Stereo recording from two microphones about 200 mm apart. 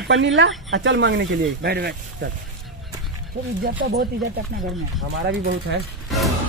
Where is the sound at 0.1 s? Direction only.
65° right (ahead or behind).